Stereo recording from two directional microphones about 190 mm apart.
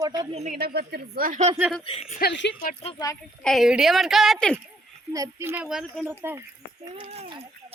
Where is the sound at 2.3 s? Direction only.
65° left (ahead or behind).